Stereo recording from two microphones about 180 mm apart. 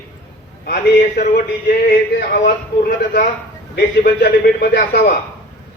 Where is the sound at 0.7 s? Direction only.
60° left (ahead or behind).